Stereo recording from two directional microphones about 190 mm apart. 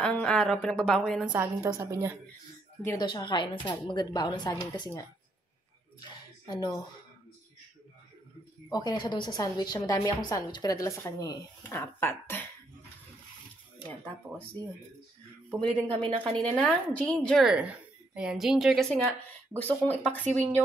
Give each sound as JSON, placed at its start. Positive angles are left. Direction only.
{"t": 0.0, "sound": "a woman's voice", "side_deg": 5}
{"t": 1.3, "sound": "a woman's voice", "side_deg": -15}
{"t": 2.8, "sound": "a woman's voice", "side_deg": 15}
{"t": 5.9, "sound": "a sound", "side_deg": 25}
{"t": 8.6, "sound": "a woman's voice", "side_deg": 20}
{"t": 13.8, "sound": "a woman's voice", "side_deg": 10}